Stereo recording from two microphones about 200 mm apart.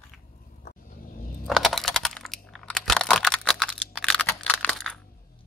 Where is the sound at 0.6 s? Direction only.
45° left (ahead or behind).